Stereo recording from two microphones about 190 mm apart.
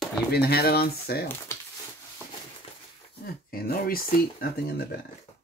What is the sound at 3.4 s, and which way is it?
Speech, 50° left (ahead or behind).